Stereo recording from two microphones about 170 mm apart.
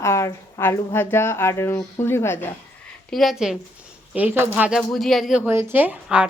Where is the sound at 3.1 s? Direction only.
Centre (ahead or behind).